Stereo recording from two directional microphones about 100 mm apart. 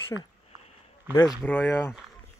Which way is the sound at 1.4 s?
15° left (ahead or behind).